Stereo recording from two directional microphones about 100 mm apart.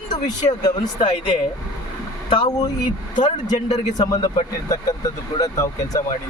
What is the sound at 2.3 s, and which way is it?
Speech, 45° left (ahead or behind).